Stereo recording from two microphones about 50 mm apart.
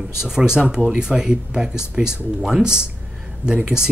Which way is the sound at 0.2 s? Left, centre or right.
Centre.